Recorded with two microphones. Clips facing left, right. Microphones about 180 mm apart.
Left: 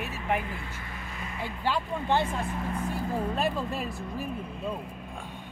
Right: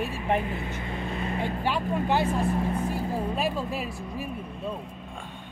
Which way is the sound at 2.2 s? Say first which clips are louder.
Right 6 dB; 35° right (ahead or behind).